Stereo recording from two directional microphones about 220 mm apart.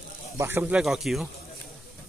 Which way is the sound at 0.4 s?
10° right (ahead or behind).